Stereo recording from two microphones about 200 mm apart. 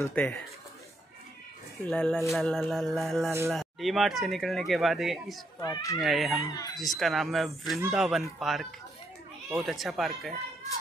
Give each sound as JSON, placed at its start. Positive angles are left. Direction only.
{"t": 0.0, "sound": "speech", "side_deg": 5}
{"t": 1.9, "sound": "speech", "side_deg": 0}
{"t": 3.3, "sound": "speech", "side_deg": -15}
{"t": 3.5, "sound": "speech", "side_deg": 0}
{"t": 5.6, "sound": "speech", "side_deg": 20}
{"t": 5.9, "sound": "speech", "side_deg": 0}
{"t": 6.5, "sound": "speech", "side_deg": 20}
{"t": 6.8, "sound": "speech", "side_deg": 0}